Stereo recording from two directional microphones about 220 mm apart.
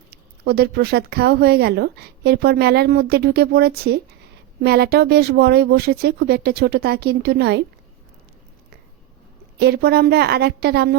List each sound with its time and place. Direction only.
0.1 s speech: 45° right (ahead or behind)
9.6 s speech: 45° right (ahead or behind)